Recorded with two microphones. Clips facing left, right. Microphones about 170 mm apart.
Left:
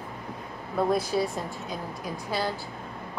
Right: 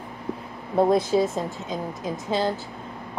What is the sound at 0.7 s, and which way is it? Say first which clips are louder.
A woman's voice: right 6 dB; 25° right (ahead or behind).